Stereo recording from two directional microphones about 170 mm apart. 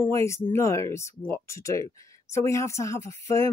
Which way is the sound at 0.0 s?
15° left (ahead or behind).